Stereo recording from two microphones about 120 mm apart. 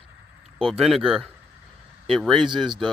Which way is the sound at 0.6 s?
Centre (ahead or behind).